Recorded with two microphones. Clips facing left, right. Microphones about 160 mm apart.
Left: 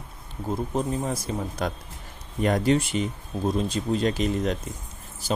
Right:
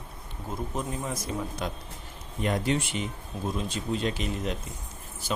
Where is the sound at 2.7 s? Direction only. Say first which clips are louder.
Left 6 dB; 40° left (ahead or behind).